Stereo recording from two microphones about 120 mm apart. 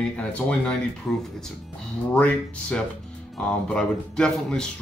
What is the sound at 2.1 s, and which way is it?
Speech, 10° left (ahead or behind).